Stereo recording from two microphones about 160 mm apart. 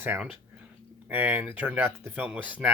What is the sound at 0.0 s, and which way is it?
Speech, 10° right (ahead or behind).